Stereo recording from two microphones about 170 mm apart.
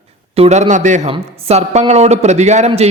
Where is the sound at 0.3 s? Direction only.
40° right (ahead or behind).